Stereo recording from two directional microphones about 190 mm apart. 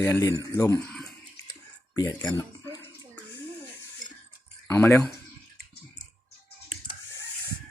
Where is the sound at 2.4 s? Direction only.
15° left (ahead or behind).